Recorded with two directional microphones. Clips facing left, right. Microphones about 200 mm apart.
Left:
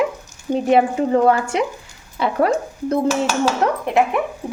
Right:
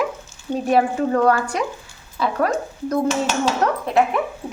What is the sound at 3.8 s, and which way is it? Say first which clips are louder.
Speech: even; 15° left (ahead or behind).